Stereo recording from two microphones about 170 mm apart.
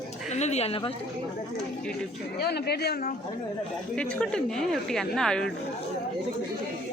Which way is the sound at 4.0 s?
5° left (ahead or behind).